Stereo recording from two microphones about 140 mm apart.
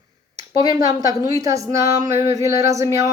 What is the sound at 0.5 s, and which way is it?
Speech, 25° right (ahead or behind).